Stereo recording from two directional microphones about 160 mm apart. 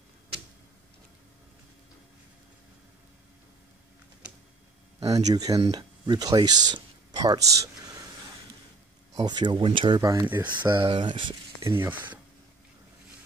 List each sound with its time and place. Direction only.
5.3 s speech: 25° right (ahead or behind)
9.1 s speech: 25° right (ahead or behind)
10.5 s speech: 10° right (ahead or behind)
10.8 s speech: 35° right (ahead or behind)
11.6 s speech: 15° right (ahead or behind)